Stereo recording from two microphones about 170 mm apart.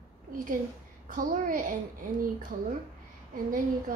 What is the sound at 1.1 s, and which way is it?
Speech, 50° right (ahead or behind).